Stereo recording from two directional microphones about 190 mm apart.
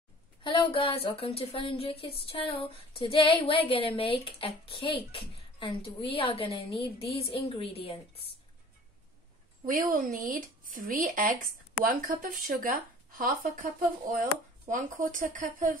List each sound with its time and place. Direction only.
0.4 s a woman's voice: 25° left (ahead or behind)
9.7 s speech: 45° right (ahead or behind)
14.7 s speech: 45° right (ahead or behind)